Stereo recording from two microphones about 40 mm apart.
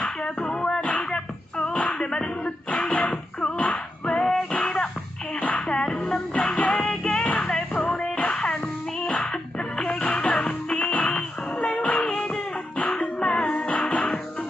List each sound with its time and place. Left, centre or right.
0.0 s a sound: left
1.8 s music: left
4.1 s music: centre
4.5 s dog: left
5.7 s music: centre
9.0 s a sound: left
9.8 s music: left
10.8 s music: left
12.1 s music: centre
12.7 s music: left